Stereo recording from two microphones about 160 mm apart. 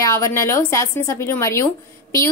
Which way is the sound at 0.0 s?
20° left (ahead or behind).